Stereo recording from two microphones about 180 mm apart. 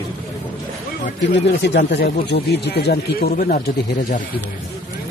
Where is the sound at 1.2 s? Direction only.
70° left (ahead or behind); by 3.6 s 50° left (ahead or behind).